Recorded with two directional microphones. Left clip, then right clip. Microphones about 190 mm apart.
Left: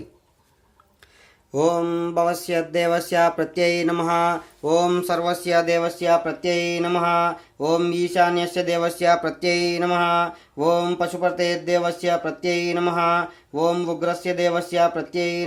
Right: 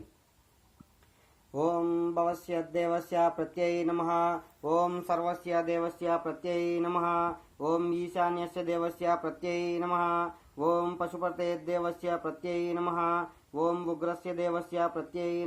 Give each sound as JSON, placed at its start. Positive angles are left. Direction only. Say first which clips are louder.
{"t": 1.5, "sound": "speech", "louder": "left 9 dB", "side_deg": 20}